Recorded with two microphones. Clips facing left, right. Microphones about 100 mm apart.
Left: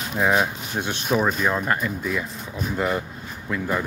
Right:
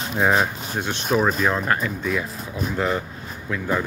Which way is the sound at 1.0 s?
Centre (ahead or behind).